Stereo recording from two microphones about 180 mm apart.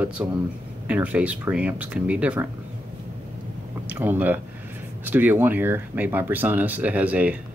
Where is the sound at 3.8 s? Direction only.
10° right (ahead or behind).